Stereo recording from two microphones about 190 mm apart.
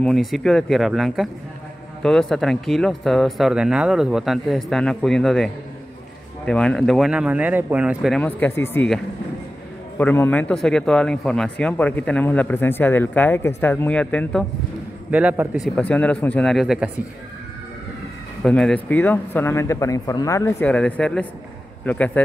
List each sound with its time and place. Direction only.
0.0 s speech: centre (ahead or behind)
8.2 s a man's voice: 10° left (ahead or behind)
9.9 s a man's voice: 10° left (ahead or behind)
15.0 s a man's voice: 5° right (ahead or behind)
15.6 s speech: 5° left (ahead or behind)
18.4 s a man's voice: 5° left (ahead or behind)